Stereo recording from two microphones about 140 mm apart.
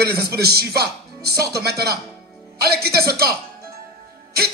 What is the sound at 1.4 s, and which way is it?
Speech, 25° right (ahead or behind).